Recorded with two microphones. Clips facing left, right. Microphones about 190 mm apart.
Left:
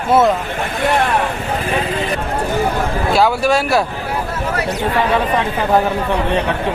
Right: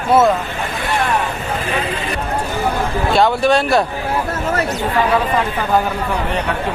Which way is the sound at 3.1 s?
5° left (ahead or behind).